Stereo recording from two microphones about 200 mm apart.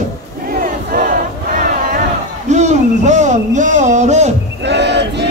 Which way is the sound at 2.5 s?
35° right (ahead or behind).